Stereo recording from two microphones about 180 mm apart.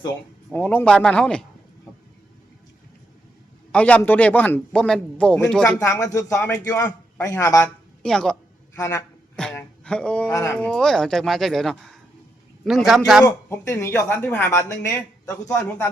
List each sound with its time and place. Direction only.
0.5 s speech: 10° left (ahead or behind)
3.7 s speech: 10° left (ahead or behind)
8.0 s speech: 5° left (ahead or behind)
8.7 s a man's voice: 15° left (ahead or behind)
9.3 s a sound: 5° left (ahead or behind)
10.3 s speech: 10° left (ahead or behind)
13.2 s speech: 15° left (ahead or behind)